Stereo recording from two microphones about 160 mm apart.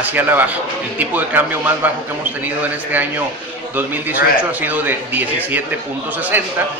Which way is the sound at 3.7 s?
10° right (ahead or behind).